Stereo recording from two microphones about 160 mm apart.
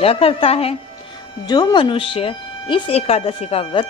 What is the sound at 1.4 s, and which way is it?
A woman's voice, 25° left (ahead or behind).